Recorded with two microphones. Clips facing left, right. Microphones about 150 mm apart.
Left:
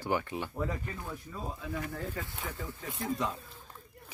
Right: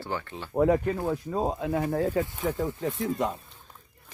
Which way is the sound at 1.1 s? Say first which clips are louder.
Right 13 dB; 80° right.